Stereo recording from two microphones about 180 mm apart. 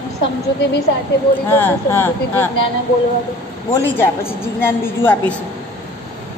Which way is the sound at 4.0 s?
15° left (ahead or behind).